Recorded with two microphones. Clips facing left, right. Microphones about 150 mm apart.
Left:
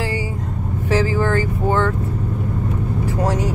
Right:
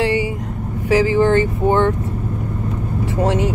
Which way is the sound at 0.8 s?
20° right (ahead or behind).